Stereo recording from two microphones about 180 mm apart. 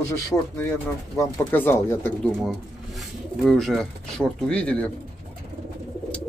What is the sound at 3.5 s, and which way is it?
Speech, centre (ahead or behind).